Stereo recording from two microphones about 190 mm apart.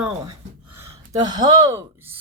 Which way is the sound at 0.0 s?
15° right (ahead or behind).